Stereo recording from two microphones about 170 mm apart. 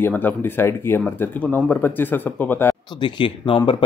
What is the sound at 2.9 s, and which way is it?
Speech, 25° left (ahead or behind).